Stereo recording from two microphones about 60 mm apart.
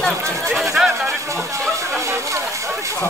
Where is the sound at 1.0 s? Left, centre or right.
Right.